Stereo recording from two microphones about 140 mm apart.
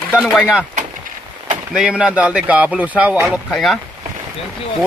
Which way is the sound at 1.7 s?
5° right (ahead or behind).